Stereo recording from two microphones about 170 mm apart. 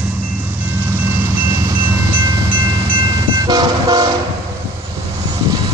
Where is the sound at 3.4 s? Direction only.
25° right (ahead or behind).